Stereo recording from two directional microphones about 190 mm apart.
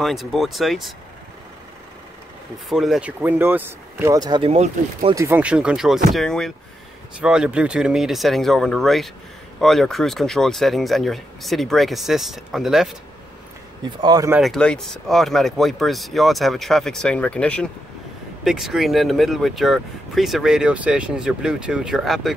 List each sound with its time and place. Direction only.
0.0 s speech: centre (ahead or behind)
2.7 s speech: centre (ahead or behind); by 5.1 s 30° right (ahead or behind)
5.1 s speech: 10° right (ahead or behind)
13.8 s speech: 20° right (ahead or behind)
14.4 s speech: 5° left (ahead or behind)